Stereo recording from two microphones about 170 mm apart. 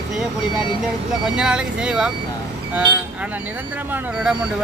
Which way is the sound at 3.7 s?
5° right (ahead or behind).